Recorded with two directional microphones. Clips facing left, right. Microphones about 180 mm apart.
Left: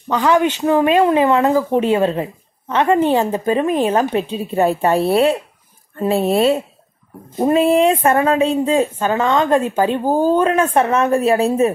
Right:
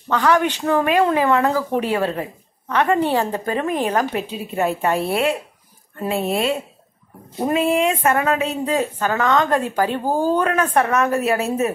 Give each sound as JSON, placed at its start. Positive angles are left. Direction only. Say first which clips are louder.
{"t": 0.1, "sound": "speech", "louder": "left 3 dB", "side_deg": 20}